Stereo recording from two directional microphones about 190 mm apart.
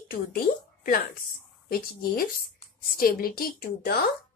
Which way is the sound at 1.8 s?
50° left (ahead or behind).